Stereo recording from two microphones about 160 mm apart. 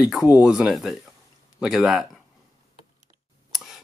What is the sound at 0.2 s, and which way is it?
Speech, 20° left (ahead or behind).